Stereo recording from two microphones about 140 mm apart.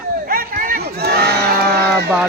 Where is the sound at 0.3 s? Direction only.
90° right.